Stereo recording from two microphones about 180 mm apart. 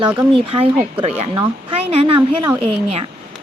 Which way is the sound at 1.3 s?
30° right (ahead or behind).